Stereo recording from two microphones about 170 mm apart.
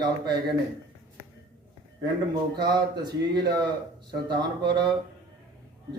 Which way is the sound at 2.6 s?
25° right (ahead or behind).